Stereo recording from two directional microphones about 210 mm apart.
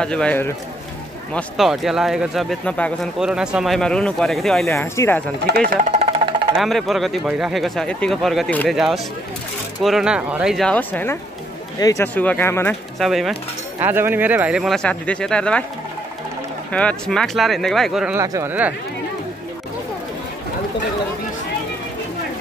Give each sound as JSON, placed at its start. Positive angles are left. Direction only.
{"t": 0.0, "sound": "speech", "side_deg": 5}
{"t": 5.7, "sound": "music", "side_deg": -35}
{"t": 6.5, "sound": "speech", "side_deg": 0}
{"t": 13.0, "sound": "speech", "side_deg": 0}
{"t": 16.7, "sound": "speech", "side_deg": 5}
{"t": 18.1, "sound": "speech", "side_deg": -15}